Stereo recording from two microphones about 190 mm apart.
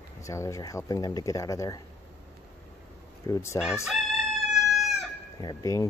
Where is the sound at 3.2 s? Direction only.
15° left (ahead or behind).